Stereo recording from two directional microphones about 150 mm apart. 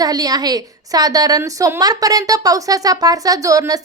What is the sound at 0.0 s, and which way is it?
A woman's voice, 25° right (ahead or behind).